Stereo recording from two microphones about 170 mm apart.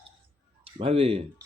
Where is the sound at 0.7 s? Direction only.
35° right (ahead or behind).